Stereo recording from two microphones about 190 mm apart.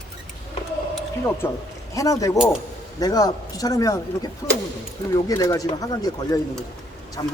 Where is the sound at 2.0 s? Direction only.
15° left (ahead or behind).